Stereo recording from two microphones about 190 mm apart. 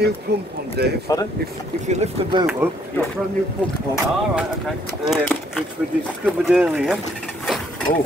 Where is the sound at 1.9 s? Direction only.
35° right (ahead or behind).